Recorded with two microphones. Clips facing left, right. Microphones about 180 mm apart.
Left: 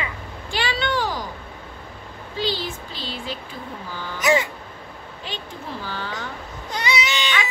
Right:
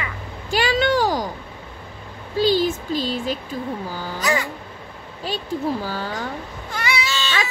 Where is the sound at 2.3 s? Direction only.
45° right (ahead or behind).